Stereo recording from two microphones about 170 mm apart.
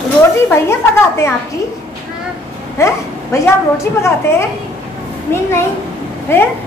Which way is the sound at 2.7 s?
15° left (ahead or behind).